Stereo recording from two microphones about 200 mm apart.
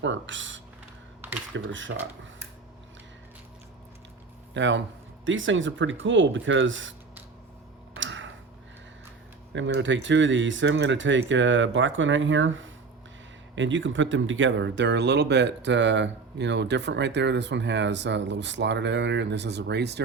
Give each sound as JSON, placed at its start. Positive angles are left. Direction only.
{"t": 0.0, "sound": "speech", "side_deg": -70}
{"t": 4.5, "sound": "speech", "side_deg": -65}
{"t": 7.9, "sound": "a sound", "side_deg": -70}
{"t": 9.6, "sound": "speech", "side_deg": -65}